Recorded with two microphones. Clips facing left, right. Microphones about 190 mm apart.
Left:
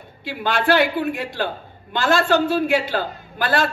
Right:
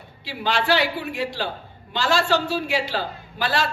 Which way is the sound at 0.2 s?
50° left (ahead or behind).